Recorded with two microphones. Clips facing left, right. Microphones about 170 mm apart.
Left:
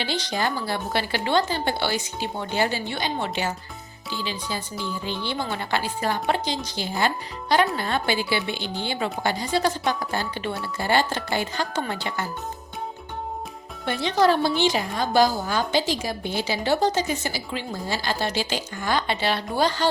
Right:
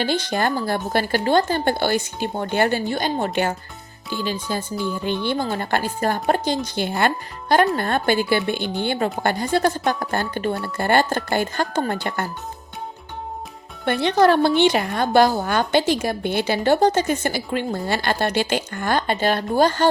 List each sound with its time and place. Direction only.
0.0 s a woman's voice: 50° right (ahead or behind)
13.8 s a woman's voice: 65° right (ahead or behind)